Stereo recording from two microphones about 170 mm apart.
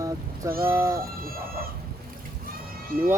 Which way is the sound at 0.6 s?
15° right (ahead or behind).